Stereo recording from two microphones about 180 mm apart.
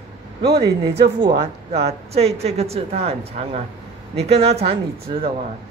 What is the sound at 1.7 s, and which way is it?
Speech, 35° right (ahead or behind).